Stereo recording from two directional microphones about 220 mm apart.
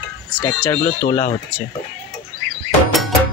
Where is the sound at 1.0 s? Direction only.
35° left (ahead or behind).